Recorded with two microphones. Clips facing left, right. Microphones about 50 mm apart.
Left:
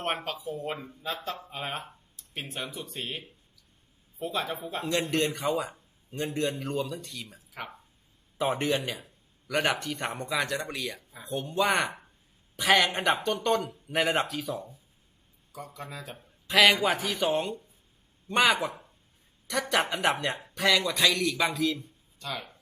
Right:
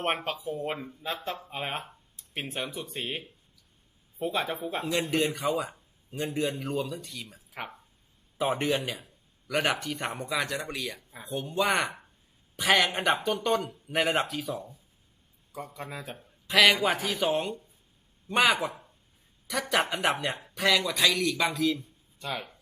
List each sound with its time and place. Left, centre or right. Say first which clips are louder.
0.2 s a man's voice: right 2 dB; centre
1.0 s speech: even; centre
2.1 s a sound: right 3 dB; right
2.8 s speech: right 2 dB; right
4.2 s speech: right 2 dB; centre
4.8 s a man's voice: left 1 dB; centre
15.9 s speech: right 2 dB; centre
16.1 s a man's voice: even; centre
22.2 s speech: right 2 dB; right